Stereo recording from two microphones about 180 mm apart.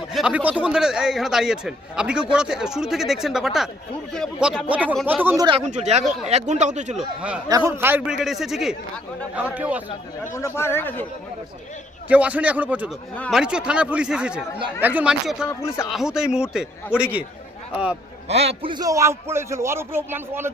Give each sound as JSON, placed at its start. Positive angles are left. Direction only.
{"t": 0.1, "sound": "a man's voice", "side_deg": -5}
{"t": 5.4, "sound": "speech", "side_deg": -25}
{"t": 5.6, "sound": "speech", "side_deg": -40}
{"t": 6.9, "sound": "a man's voice", "side_deg": -5}
{"t": 7.4, "sound": "a man's voice", "side_deg": -15}
{"t": 10.3, "sound": "speech", "side_deg": 15}
{"t": 12.0, "sound": "a man's voice", "side_deg": -10}
{"t": 15.4, "sound": "speech", "side_deg": 15}
{"t": 15.9, "sound": "a man's voice", "side_deg": -5}
{"t": 18.3, "sound": "a man's voice", "side_deg": -35}